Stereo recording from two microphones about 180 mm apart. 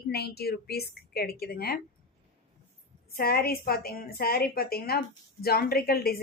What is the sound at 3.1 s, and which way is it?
A woman's voice, 55° left (ahead or behind).